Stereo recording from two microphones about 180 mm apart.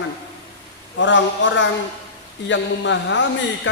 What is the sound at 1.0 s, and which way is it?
A man's voice, 90° left.